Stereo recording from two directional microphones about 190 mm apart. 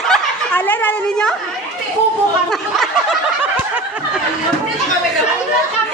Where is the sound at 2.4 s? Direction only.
Centre (ahead or behind).